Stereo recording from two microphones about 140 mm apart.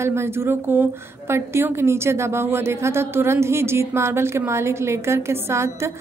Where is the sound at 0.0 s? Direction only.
20° right (ahead or behind).